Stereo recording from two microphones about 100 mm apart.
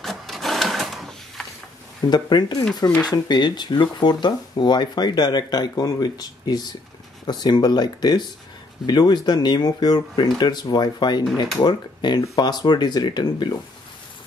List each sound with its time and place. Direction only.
0.0 s printer: centre (ahead or behind)
2.0 s speech: 45° left (ahead or behind)